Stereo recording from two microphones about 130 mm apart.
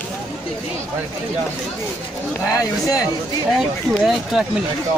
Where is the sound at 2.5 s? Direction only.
25° left (ahead or behind).